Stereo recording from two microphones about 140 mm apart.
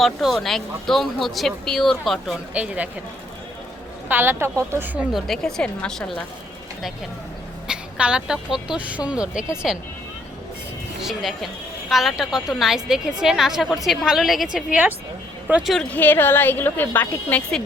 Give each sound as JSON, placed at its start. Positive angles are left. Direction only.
{"t": 0.0, "sound": "speech", "side_deg": 0}
{"t": 2.5, "sound": "a woman's voice", "side_deg": -10}
{"t": 4.1, "sound": "a woman's voice", "side_deg": -15}
{"t": 4.8, "sound": "speech", "side_deg": -5}
{"t": 7.7, "sound": "a woman's voice", "side_deg": -5}
{"t": 11.0, "sound": "speech", "side_deg": 0}
{"t": 15.7, "sound": "a woman's voice", "side_deg": 5}